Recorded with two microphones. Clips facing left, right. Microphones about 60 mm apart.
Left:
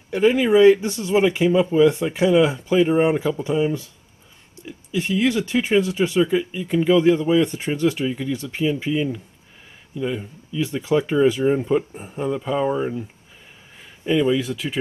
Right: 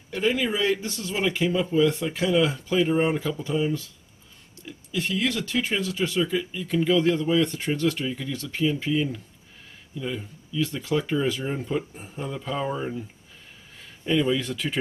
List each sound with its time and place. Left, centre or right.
0.1 s speech: left; by 14.8 s centre